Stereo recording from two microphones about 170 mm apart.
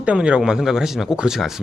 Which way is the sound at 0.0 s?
5° right (ahead or behind).